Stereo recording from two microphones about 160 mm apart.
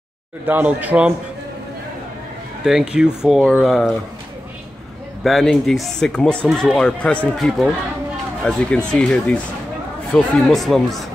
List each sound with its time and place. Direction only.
0.5 s speech: 10° right (ahead or behind)
2.6 s speech: 5° right (ahead or behind)
5.2 s speech: centre (ahead or behind)